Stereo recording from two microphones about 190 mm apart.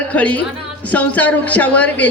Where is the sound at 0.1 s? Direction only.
5° left (ahead or behind).